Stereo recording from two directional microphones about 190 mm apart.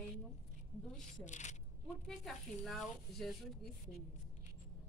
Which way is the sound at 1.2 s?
40° left (ahead or behind).